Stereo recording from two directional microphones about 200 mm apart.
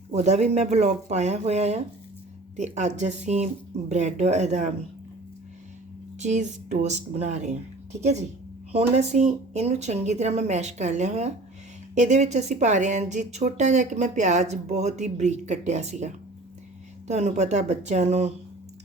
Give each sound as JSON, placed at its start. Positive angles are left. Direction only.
{"t": 0.1, "sound": "speech", "side_deg": -35}
{"t": 6.1, "sound": "speech", "side_deg": -35}
{"t": 8.7, "sound": "speech", "side_deg": -35}